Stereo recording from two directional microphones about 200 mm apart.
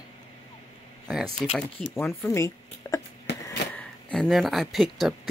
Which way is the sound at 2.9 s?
15° left (ahead or behind).